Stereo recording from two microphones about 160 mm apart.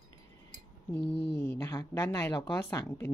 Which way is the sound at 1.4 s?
15° left (ahead or behind).